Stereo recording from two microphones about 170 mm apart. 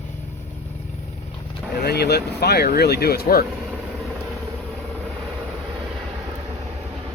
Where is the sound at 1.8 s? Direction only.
70° left (ahead or behind).